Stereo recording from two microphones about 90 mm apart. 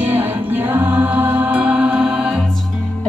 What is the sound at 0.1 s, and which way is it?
Music, 20° right (ahead or behind).